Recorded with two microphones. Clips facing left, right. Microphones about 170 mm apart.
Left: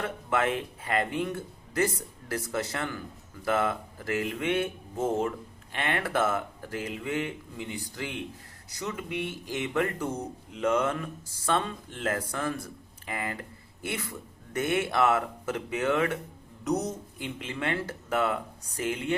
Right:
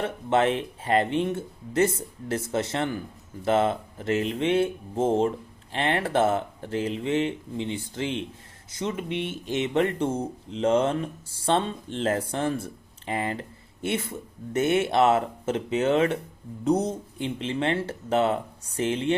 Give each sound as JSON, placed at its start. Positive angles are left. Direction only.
{"t": 0.0, "sound": "speech", "side_deg": -25}